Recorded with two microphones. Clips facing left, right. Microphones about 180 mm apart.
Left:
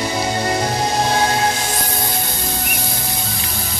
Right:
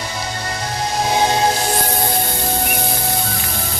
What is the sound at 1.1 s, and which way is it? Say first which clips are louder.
Music: right 1 dB; 20° right (ahead or behind).